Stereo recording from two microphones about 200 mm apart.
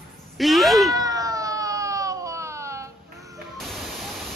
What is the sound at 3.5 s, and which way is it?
Waterfall, centre (ahead or behind).